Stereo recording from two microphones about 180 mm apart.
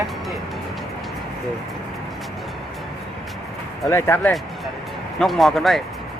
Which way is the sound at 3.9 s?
15° left (ahead or behind).